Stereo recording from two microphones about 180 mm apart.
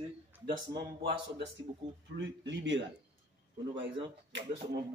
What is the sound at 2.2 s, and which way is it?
Speech, 85° right.